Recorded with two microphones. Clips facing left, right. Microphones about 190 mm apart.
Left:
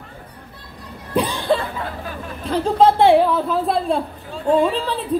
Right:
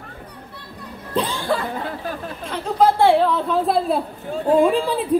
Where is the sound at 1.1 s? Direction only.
15° left (ahead or behind).